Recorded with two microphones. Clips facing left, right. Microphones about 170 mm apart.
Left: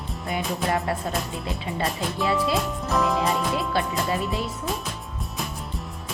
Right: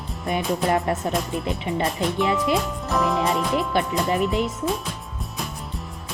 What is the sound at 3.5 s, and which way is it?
Music, 20° right (ahead or behind).